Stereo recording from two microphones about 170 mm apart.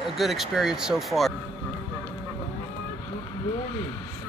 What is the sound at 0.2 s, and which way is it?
Speech, centre (ahead or behind).